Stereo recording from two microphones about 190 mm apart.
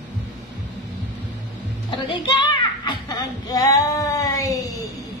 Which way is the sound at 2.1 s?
25° left (ahead or behind).